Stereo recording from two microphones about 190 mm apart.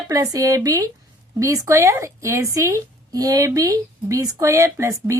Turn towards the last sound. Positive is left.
turn(degrees=-15)  # may be behind; listen again after turning